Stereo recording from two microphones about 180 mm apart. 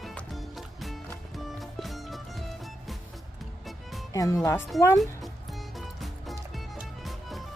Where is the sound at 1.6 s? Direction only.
Centre (ahead or behind).